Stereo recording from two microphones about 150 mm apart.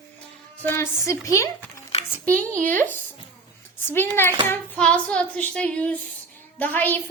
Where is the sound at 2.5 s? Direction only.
60° right (ahead or behind).